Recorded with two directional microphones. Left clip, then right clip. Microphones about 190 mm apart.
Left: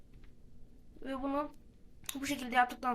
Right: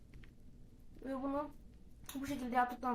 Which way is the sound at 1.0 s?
15° left (ahead or behind).